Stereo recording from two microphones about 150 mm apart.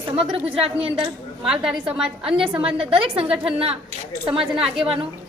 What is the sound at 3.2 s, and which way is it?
Speech, 40° right (ahead or behind).